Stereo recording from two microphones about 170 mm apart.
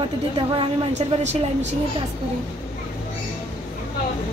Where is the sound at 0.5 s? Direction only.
40° right (ahead or behind).